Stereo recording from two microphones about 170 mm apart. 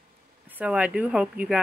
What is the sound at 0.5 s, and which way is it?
Speech, 10° right (ahead or behind).